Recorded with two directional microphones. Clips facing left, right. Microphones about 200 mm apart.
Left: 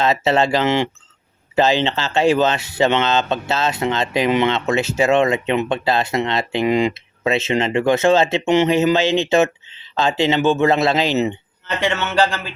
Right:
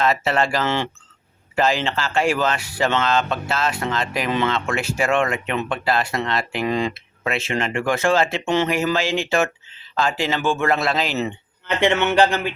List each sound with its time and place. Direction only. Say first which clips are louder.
0.0 s speech: left 3 dB; 25° left (ahead or behind)
11.8 s speech: right 2 dB; 15° right (ahead or behind)